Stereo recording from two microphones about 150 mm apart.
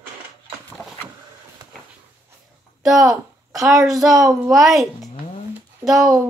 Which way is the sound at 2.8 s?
Centre (ahead or behind).